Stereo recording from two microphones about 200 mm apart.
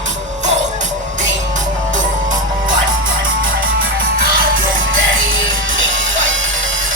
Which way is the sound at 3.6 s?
45° right (ahead or behind).